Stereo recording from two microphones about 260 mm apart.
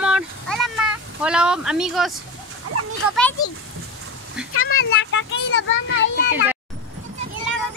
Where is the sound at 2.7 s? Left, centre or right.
Right.